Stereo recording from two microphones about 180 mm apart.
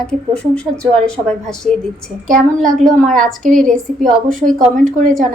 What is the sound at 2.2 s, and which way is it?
Speech, 50° right (ahead or behind).